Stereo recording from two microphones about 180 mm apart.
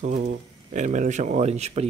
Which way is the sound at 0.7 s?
45° right (ahead or behind).